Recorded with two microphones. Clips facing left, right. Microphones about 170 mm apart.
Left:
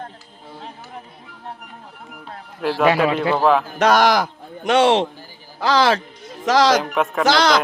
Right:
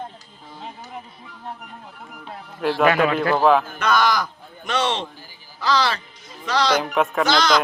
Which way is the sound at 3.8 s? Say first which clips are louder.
Left 5 dB; 75° left (ahead or behind).